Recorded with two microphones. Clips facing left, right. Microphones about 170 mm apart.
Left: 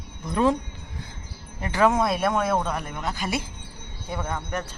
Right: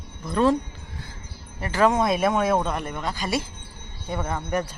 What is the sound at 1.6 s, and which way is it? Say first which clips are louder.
Speech: right 1 dB; 10° left (ahead or behind).